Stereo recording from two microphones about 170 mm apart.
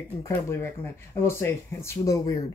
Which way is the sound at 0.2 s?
15° left (ahead or behind).